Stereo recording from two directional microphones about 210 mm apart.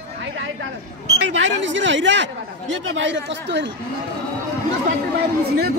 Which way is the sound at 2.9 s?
60° right (ahead or behind).